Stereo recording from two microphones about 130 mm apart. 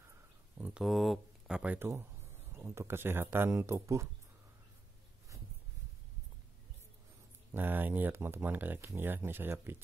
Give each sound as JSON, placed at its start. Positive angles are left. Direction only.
{"t": 0.6, "sound": "speech", "side_deg": -10}
{"t": 7.5, "sound": "speech", "side_deg": -15}